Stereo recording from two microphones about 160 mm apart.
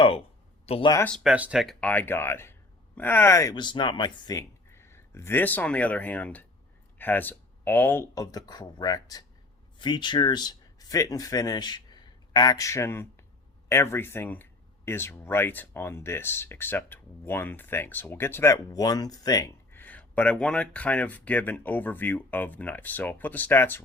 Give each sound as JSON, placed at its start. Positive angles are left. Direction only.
{"t": 0.6, "sound": "speech", "side_deg": 40}
{"t": 1.2, "sound": "speech", "side_deg": -5}
{"t": 3.5, "sound": "speech", "side_deg": 30}
{"t": 19.7, "sound": "speech", "side_deg": 10}